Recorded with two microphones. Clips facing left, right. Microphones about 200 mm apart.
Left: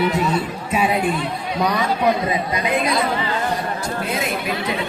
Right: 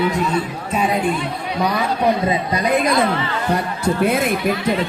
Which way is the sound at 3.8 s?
55° right (ahead or behind).